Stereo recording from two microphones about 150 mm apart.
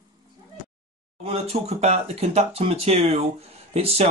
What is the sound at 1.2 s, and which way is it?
Speech, 45° right (ahead or behind).